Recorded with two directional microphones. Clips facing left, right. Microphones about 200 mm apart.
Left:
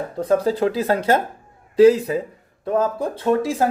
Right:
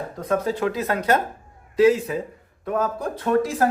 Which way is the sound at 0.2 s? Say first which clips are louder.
Left 5 dB; 30° left (ahead or behind).